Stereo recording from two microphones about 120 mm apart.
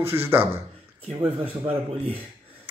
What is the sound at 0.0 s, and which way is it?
Speech, 20° right (ahead or behind).